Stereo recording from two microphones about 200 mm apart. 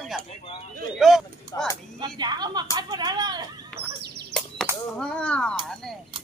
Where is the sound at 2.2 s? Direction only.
20° right (ahead or behind).